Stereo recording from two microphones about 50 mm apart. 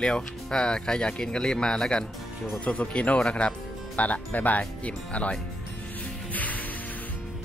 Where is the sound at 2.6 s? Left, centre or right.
Left.